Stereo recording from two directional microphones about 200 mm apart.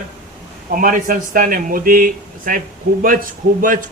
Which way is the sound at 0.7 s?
45° right (ahead or behind).